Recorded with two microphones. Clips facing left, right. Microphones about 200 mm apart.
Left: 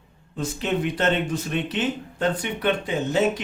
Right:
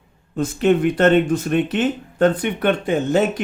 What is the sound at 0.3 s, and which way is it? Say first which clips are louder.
Speech: right 9 dB; 55° right (ahead or behind).